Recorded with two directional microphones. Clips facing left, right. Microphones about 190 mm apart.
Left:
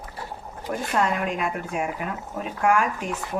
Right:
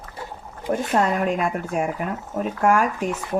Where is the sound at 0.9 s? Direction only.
40° right (ahead or behind).